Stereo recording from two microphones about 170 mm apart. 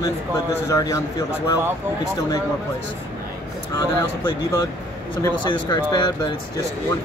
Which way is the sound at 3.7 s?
25° left (ahead or behind).